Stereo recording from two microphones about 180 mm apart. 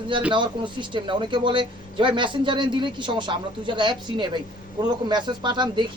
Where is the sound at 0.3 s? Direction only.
25° right (ahead or behind).